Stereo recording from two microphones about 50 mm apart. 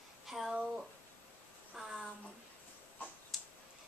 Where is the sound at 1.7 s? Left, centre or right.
Centre.